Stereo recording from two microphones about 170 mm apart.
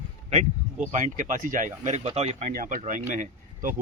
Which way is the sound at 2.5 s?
50° right (ahead or behind).